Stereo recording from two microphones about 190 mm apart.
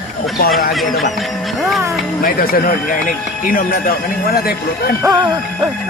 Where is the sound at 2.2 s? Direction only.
50° left (ahead or behind).